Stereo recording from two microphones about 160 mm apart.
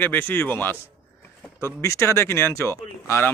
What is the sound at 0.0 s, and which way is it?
Speech, 10° left (ahead or behind).